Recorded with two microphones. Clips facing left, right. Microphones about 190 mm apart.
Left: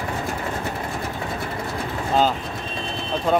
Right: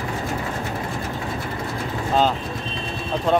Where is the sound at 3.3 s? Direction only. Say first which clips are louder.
Right 1 dB; centre (ahead or behind).